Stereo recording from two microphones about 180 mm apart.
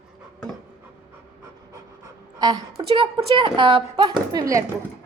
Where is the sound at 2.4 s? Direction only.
25° right (ahead or behind).